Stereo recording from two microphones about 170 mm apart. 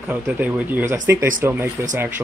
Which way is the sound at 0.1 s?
10° right (ahead or behind).